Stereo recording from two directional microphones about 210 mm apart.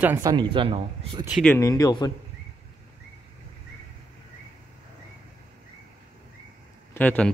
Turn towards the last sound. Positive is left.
turn(degrees=5)  # may be behind; listen again after turning